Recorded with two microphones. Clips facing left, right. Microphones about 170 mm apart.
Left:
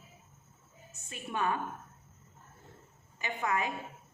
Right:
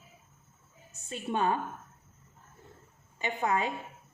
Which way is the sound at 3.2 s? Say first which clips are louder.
Right 3 dB; 30° right (ahead or behind).